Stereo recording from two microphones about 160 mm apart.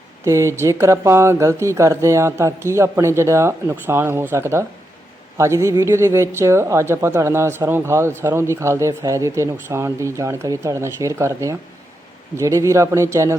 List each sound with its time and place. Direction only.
0.3 s speech: 20° right (ahead or behind)